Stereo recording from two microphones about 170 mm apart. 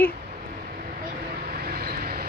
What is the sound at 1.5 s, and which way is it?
Vehicle, 65° right (ahead or behind).